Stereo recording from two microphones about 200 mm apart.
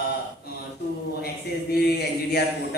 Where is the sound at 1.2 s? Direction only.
50° left (ahead or behind).